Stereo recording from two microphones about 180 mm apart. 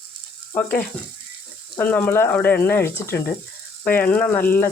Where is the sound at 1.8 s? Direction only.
10° left (ahead or behind).